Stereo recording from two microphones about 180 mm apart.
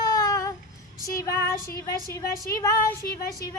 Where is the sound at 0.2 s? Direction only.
20° left (ahead or behind).